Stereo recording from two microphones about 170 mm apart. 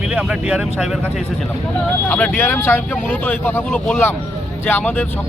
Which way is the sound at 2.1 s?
10° left (ahead or behind).